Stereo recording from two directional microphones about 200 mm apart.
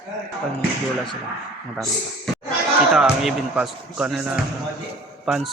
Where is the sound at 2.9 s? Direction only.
Centre (ahead or behind).